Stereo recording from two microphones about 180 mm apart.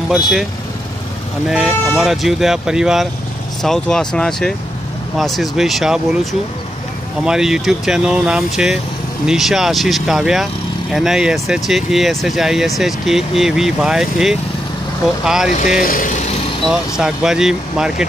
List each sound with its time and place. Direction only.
0.1 s speech: centre (ahead or behind)
1.5 s speech: 5° right (ahead or behind)
7.2 s speech: 5° right (ahead or behind)
15.8 s speech: 50° left (ahead or behind)
17.0 s speech: 5° right (ahead or behind)